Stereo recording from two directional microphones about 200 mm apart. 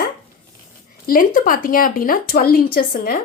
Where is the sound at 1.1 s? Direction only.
45° left (ahead or behind).